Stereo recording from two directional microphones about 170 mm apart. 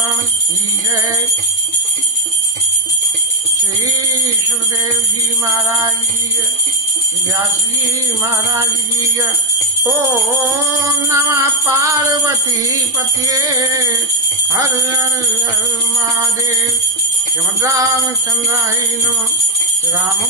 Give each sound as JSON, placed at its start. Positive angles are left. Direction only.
{"t": 5.5, "sound": "jingle bell", "side_deg": -15}
{"t": 8.2, "sound": "jingle bell", "side_deg": -15}
{"t": 11.1, "sound": "jingle bell", "side_deg": -15}
{"t": 13.2, "sound": "music", "side_deg": -20}
{"t": 17.6, "sound": "music", "side_deg": -20}